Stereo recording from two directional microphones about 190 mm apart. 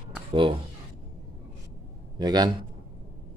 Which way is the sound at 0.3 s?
30° right (ahead or behind).